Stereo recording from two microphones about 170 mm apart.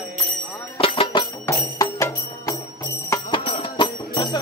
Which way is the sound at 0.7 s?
30° left (ahead or behind).